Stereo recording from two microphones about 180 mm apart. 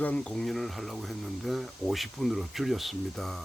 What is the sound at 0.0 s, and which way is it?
Speech, 5° left (ahead or behind).